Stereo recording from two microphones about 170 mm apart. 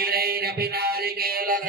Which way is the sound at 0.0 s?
60° right (ahead or behind).